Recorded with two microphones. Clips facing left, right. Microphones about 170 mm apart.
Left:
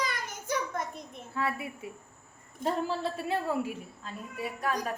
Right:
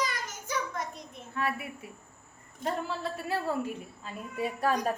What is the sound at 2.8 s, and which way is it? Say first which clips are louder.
Child singing: left 3 dB; 25° left (ahead or behind).